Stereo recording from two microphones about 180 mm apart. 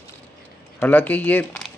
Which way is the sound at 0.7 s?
10° left (ahead or behind).